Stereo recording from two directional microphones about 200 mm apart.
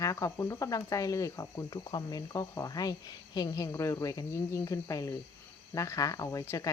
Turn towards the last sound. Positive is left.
turn(degrees=15)  # may be behind; listen again after turning